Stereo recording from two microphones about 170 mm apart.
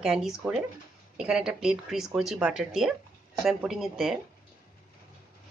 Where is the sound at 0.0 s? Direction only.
5° right (ahead or behind).